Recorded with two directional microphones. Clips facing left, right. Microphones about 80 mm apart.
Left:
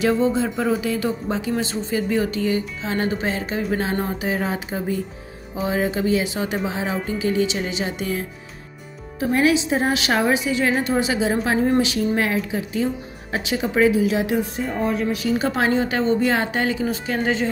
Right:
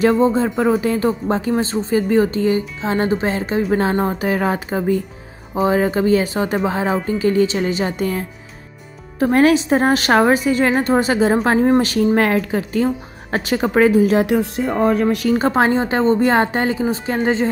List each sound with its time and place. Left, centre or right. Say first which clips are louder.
0.0 s a woman's voice: right 5 dB; right
14.7 s speech: right 8 dB; right
15.3 s speech: right 3 dB; right